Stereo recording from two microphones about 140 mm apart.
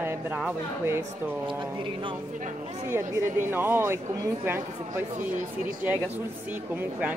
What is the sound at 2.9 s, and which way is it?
Speech, 15° right (ahead or behind).